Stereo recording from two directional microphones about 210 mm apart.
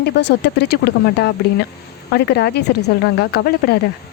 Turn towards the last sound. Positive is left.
turn(degrees=50)  # may be behind; listen again after turning